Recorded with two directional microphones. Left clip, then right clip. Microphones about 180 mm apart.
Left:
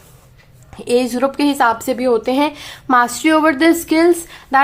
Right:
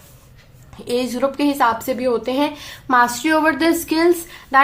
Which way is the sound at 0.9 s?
35° left (ahead or behind).